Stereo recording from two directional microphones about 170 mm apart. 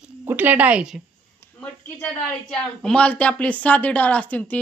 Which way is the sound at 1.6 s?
10° left (ahead or behind).